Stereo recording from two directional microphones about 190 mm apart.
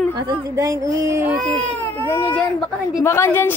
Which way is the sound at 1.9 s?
10° left (ahead or behind).